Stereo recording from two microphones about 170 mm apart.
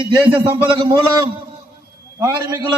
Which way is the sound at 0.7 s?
25° right (ahead or behind).